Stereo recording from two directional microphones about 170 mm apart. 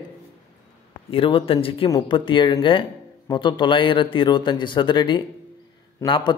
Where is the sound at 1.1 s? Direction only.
35° left (ahead or behind).